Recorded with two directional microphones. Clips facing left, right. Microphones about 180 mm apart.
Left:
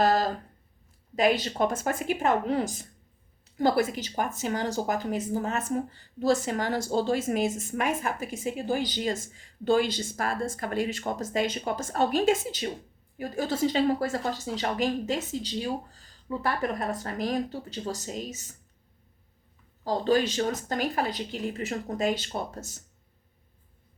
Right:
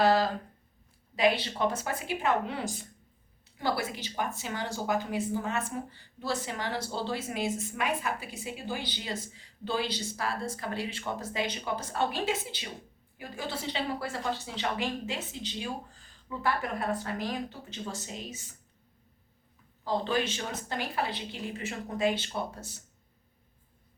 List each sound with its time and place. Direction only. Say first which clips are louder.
0.0 s a sound: left 1 dB; 45° left (ahead or behind)
1.1 s a woman's voice: left 2 dB; 45° left (ahead or behind)
19.8 s a woman's voice: left 5 dB; 40° left (ahead or behind)